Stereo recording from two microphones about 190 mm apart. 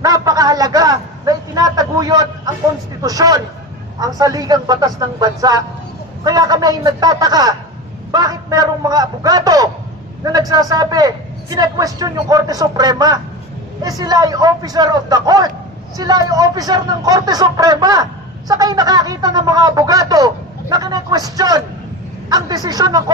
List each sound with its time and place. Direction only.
0.0 s speech: 20° right (ahead or behind)